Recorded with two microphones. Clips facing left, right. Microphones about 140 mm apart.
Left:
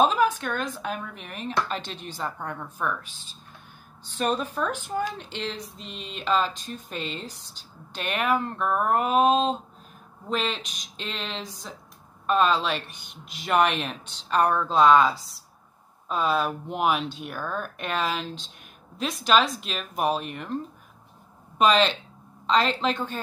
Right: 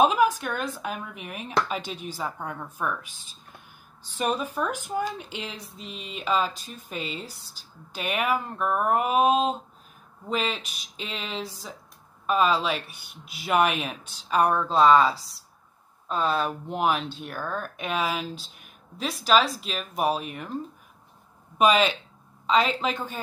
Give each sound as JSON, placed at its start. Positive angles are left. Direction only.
{"t": 0.0, "sound": "speech", "side_deg": -10}
{"t": 21.5, "sound": "speech", "side_deg": -10}